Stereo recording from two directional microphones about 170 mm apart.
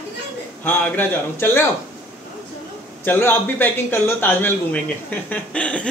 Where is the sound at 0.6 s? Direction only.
15° left (ahead or behind).